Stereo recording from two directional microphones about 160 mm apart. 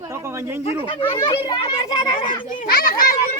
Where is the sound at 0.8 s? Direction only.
30° left (ahead or behind).